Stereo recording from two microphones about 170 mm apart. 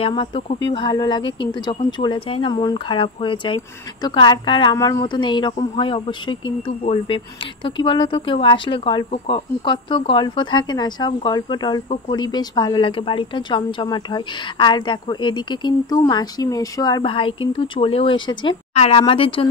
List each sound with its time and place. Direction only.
0.0 s speech: 30° left (ahead or behind)